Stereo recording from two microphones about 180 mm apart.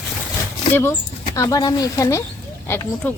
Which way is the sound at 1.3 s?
20° left (ahead or behind).